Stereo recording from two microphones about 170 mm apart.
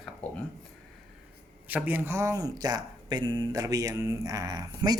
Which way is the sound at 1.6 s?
10° right (ahead or behind).